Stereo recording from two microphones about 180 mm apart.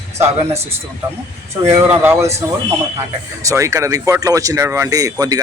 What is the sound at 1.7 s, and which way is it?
Speech, 10° right (ahead or behind).